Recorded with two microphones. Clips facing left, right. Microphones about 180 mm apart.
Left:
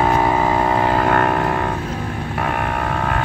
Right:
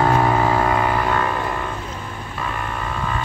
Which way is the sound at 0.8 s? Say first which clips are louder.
Left 4 dB; 45° left (ahead or behind).